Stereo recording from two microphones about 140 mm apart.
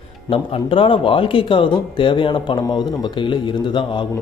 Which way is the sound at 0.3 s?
40° left (ahead or behind).